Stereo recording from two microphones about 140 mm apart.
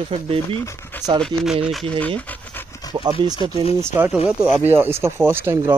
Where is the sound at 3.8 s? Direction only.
15° right (ahead or behind).